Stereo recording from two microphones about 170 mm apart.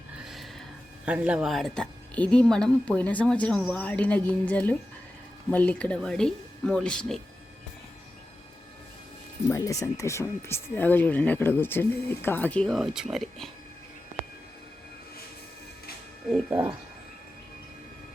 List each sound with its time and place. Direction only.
0.2 s a sound: centre (ahead or behind)
1.0 s a woman's voice: 5° right (ahead or behind)
9.5 s speech: 15° left (ahead or behind); by 13.5 s centre (ahead or behind)
16.5 s speech: 15° right (ahead or behind)